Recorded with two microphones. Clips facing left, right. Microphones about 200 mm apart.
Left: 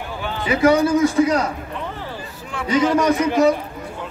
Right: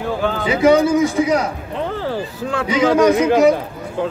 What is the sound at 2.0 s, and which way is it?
A man's voice, 90° right.